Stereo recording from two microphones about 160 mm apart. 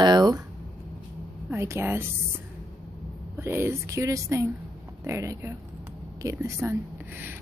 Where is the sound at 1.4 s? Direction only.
15° right (ahead or behind).